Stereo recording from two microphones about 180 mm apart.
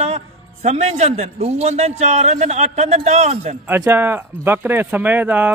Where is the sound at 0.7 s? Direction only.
35° right (ahead or behind).